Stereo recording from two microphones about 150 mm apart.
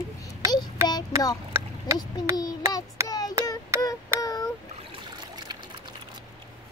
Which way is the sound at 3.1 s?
25° left (ahead or behind).